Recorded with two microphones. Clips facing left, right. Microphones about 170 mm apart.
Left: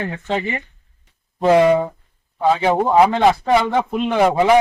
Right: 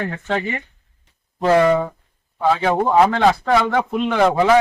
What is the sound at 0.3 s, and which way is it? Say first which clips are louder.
A man's voice: left 1 dB; 15° left (ahead or behind).